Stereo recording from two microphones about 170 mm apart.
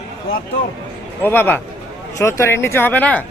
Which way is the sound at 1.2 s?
10° left (ahead or behind).